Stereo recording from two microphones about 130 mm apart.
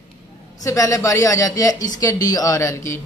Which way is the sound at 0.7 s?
25° left (ahead or behind).